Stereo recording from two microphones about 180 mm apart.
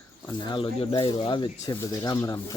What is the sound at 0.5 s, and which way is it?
Speech, 30° left (ahead or behind).